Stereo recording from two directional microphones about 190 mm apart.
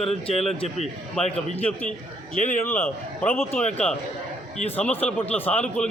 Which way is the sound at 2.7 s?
10° left (ahead or behind).